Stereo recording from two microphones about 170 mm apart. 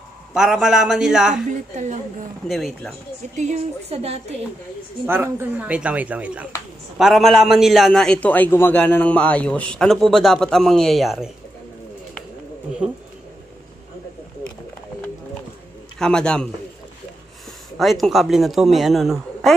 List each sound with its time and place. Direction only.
0.3 s a man's voice: 5° right (ahead or behind)
2.4 s a man's voice: centre (ahead or behind)
3.3 s a woman's voice: 40° right (ahead or behind)
5.0 s a man's voice: 15° right (ahead or behind)
16.0 s a man's voice: 5° left (ahead or behind)
17.7 s a man's voice: centre (ahead or behind)